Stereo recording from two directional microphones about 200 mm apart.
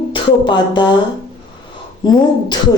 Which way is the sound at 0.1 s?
25° left (ahead or behind).